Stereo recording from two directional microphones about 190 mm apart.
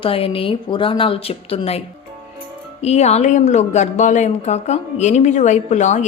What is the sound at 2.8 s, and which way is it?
A woman's voice, 35° left (ahead or behind).